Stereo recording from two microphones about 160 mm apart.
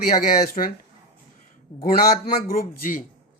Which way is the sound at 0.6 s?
45° left (ahead or behind).